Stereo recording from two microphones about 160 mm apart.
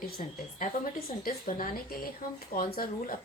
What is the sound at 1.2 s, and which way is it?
A woman's voice, 60° left (ahead or behind).